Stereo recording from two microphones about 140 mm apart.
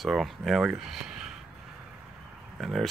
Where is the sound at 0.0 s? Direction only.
Centre (ahead or behind).